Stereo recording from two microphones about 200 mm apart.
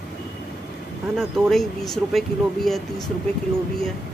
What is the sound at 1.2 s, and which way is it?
Speech, centre (ahead or behind).